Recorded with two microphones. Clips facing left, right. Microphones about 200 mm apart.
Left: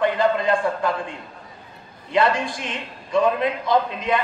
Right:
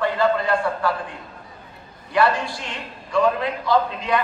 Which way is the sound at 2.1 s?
20° left (ahead or behind).